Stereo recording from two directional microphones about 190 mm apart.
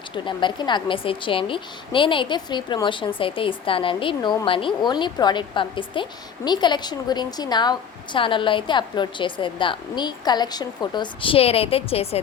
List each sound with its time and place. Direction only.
0.1 s a woman's voice: 25° left (ahead or behind)